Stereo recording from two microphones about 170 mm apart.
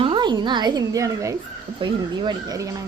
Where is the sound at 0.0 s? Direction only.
30° right (ahead or behind).